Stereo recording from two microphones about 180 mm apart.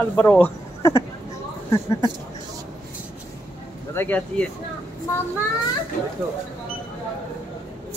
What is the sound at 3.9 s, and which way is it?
Speech, 10° left (ahead or behind).